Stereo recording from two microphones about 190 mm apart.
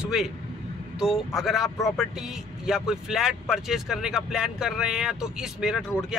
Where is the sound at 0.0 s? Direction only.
Centre (ahead or behind).